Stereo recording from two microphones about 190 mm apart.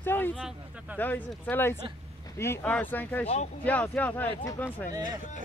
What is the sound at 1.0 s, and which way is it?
Speech, 10° left (ahead or behind).